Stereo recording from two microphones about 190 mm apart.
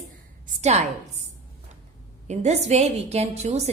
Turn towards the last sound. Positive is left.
turn(degrees=-35)  # may be behind; listen again after turning